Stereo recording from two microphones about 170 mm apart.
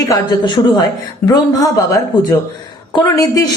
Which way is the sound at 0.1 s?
25° left (ahead or behind).